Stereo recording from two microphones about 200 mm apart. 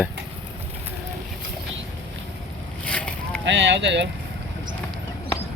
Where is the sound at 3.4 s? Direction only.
60° right (ahead or behind).